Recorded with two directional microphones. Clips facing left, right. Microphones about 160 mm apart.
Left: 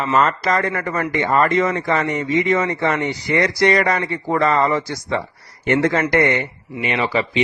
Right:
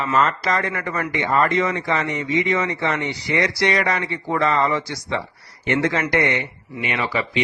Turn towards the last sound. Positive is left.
turn(degrees=30)  # may be behind; listen again after turning